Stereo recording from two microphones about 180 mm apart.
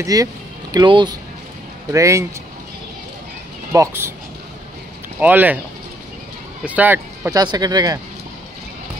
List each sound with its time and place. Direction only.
0.0 s speech: 20° right (ahead or behind)
3.7 s speech: 15° right (ahead or behind)
5.2 s speech: 10° right (ahead or behind)
6.6 s speech: 10° right (ahead or behind)
7.3 s speech: 20° right (ahead or behind)